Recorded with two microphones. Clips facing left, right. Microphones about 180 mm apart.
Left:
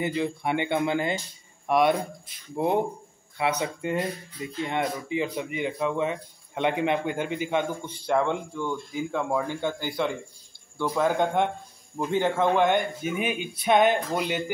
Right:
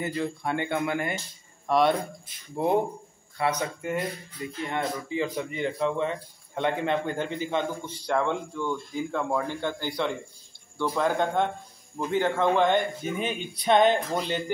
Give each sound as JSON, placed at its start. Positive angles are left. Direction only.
{"t": 0.0, "sound": "speech", "side_deg": 20}
{"t": 1.7, "sound": "speech", "side_deg": 10}
{"t": 3.3, "sound": "speech", "side_deg": 15}